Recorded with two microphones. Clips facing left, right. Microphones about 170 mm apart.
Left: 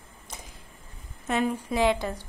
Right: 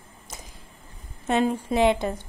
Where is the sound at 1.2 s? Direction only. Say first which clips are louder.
Right 4 dB; 25° right (ahead or behind).